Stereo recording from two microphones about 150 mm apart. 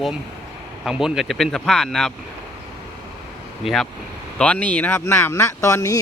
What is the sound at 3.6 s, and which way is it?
Speech, centre (ahead or behind).